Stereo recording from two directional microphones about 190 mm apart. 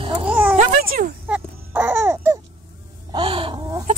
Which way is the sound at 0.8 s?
50° right (ahead or behind).